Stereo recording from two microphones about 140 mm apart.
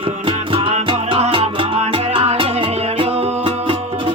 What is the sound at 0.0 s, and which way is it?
Music, 40° right (ahead or behind).